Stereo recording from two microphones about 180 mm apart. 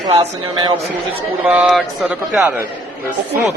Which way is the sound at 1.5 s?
5° right (ahead or behind).